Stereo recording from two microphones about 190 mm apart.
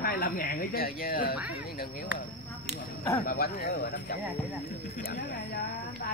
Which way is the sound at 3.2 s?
55° left (ahead or behind).